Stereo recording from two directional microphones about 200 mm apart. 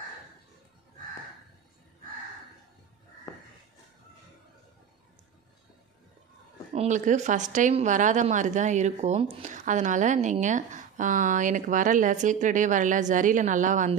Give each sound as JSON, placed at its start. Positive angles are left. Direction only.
{"t": 6.7, "sound": "speech", "side_deg": -35}